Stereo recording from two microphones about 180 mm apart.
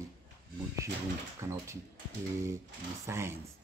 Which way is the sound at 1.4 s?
15° right (ahead or behind).